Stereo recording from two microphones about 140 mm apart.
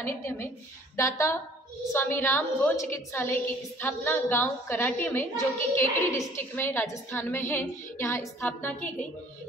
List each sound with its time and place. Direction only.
0.0 s a woman's voice: 15° left (ahead or behind)